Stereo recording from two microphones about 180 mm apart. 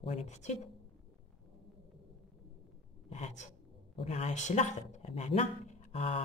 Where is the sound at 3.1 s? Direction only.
40° left (ahead or behind).